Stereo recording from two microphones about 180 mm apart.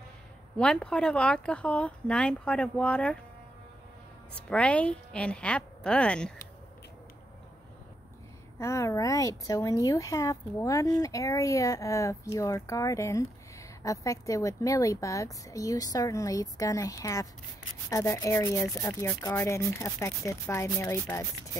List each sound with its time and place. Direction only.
0.6 s speech: 5° left (ahead or behind)
4.4 s speech: 5° left (ahead or behind)
8.5 s speech: 15° left (ahead or behind)